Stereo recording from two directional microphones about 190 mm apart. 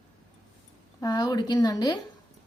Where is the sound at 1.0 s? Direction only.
20° left (ahead or behind).